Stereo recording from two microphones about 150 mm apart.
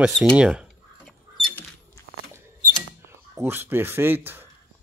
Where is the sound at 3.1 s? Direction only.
15° right (ahead or behind).